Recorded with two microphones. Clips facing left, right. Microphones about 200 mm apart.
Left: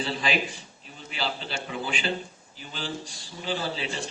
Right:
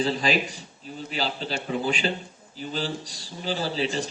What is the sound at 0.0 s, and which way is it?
Speech, 40° right (ahead or behind).